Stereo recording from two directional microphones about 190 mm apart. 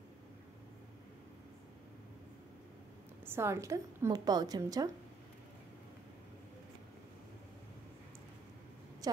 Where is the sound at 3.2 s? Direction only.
15° right (ahead or behind).